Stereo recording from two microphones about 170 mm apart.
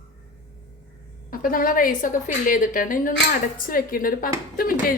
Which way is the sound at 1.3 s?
55° left (ahead or behind).